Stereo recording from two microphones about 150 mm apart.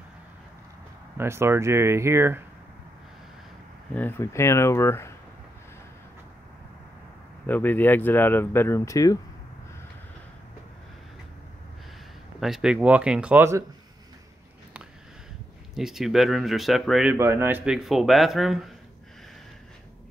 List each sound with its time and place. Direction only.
1.1 s speech: 15° right (ahead or behind)
3.9 s speech: 15° left (ahead or behind)
7.4 s speech: 10° left (ahead or behind)
12.4 s speech: centre (ahead or behind)
15.7 s speech: centre (ahead or behind)
17.1 s speech: 15° right (ahead or behind); by 18.8 s centre (ahead or behind)